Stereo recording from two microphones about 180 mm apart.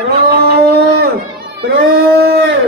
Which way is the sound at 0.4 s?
60° right (ahead or behind).